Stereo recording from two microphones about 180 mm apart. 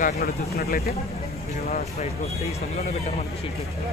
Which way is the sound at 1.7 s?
45° left (ahead or behind).